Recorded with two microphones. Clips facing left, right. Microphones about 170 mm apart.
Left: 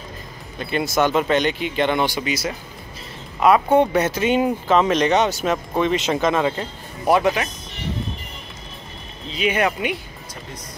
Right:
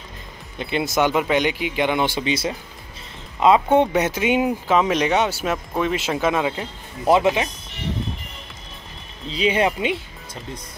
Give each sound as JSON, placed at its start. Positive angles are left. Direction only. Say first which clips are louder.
{"t": 0.6, "sound": "speech", "louder": "left 1 dB", "side_deg": -20}
{"t": 2.0, "sound": "speech", "louder": "right 1 dB", "side_deg": -25}
{"t": 7.1, "sound": "speech", "louder": "right 1 dB", "side_deg": -20}
{"t": 9.3, "sound": "speech", "louder": "right 1 dB", "side_deg": -30}